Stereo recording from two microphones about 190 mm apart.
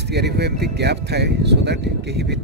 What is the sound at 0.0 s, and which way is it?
Speech, 60° right (ahead or behind).